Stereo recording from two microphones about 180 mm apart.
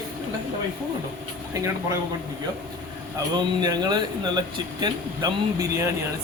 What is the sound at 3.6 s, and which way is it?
A man's voice, 20° right (ahead or behind).